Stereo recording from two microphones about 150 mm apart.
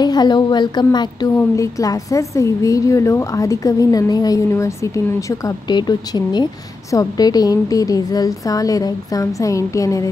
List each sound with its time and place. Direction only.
0.0 s a woman's voice: 30° left (ahead or behind)